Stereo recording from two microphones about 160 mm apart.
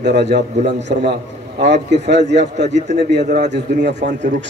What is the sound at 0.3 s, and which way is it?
A man's voice, 90° right.